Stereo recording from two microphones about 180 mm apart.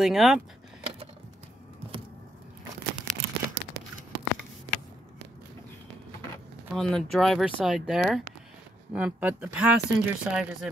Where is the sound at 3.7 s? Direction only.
75° right (ahead or behind).